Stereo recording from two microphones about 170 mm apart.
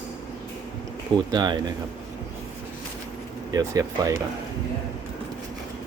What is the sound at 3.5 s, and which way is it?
Speech, 20° right (ahead or behind).